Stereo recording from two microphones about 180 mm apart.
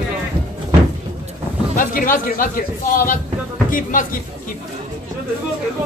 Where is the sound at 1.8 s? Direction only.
50° left (ahead or behind).